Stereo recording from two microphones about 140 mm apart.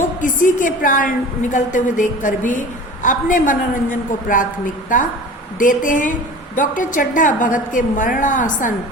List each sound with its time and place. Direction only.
0.2 s a woman's voice: 70° left (ahead or behind)
5.5 s a woman's voice: 70° left (ahead or behind)